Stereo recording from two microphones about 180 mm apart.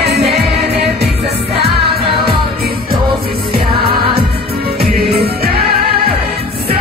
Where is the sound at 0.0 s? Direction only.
65° right (ahead or behind).